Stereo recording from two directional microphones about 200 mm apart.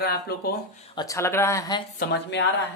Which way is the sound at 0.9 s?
15° left (ahead or behind).